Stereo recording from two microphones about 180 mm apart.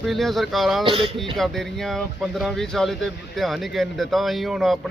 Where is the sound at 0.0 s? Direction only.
Centre (ahead or behind).